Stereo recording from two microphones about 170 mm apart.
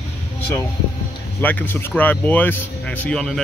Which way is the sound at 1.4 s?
10° left (ahead or behind).